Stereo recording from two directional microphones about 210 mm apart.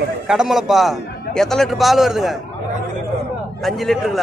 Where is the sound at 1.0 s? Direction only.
50° left (ahead or behind).